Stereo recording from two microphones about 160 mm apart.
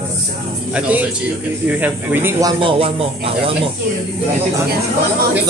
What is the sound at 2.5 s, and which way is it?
Speech, 35° right (ahead or behind).